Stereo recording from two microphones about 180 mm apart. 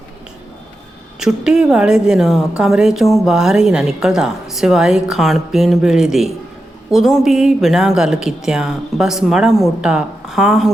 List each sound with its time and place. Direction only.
1.2 s a woman's voice: 5° right (ahead or behind)